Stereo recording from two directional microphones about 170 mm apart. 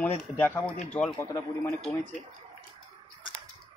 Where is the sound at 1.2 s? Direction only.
15° left (ahead or behind).